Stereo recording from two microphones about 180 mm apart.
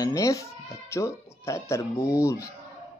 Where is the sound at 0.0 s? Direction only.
20° left (ahead or behind).